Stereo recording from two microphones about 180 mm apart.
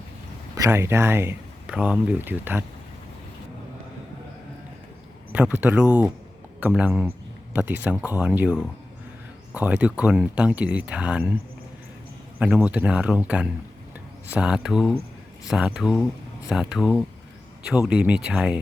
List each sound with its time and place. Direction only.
0.5 s speech: 15° right (ahead or behind)
5.3 s speech: 10° right (ahead or behind)
12.4 s speech: 5° right (ahead or behind)